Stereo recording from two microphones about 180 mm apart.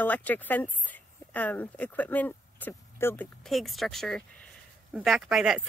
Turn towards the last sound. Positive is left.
turn(degrees=0)  # may be behind; listen again after turning